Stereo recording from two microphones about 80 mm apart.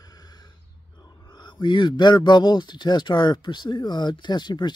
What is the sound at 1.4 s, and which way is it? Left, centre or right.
A man's voice, left.